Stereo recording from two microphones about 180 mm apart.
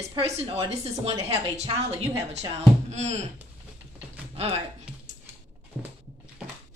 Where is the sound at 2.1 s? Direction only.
35° right (ahead or behind).